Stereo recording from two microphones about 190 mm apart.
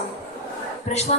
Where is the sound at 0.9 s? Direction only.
35° left (ahead or behind).